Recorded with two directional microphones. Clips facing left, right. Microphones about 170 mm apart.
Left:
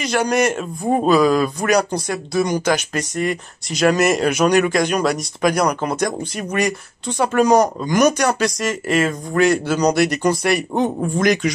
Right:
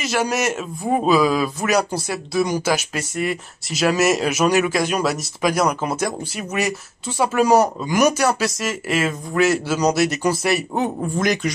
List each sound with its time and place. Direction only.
0.0 s a man's voice: 5° right (ahead or behind)